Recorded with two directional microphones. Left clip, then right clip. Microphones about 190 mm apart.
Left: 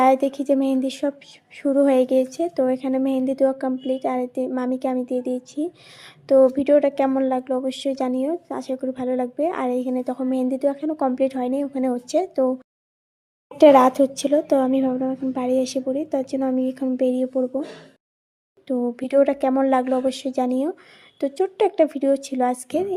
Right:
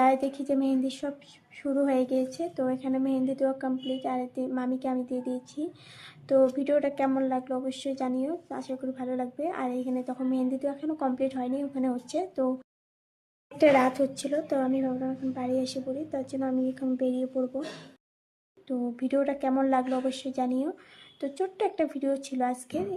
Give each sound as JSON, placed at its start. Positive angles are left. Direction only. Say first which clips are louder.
{"t": 0.0, "sound": "a woman's voice", "louder": "left 7 dB", "side_deg": 40}
{"t": 13.6, "sound": "a woman's voice", "louder": "left 9 dB", "side_deg": 40}
{"t": 18.7, "sound": "a woman's voice", "louder": "left 9 dB", "side_deg": 40}